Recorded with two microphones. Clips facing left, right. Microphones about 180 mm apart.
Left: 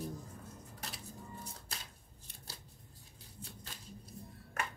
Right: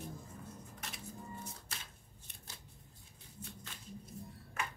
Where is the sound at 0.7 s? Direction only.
35° left (ahead or behind).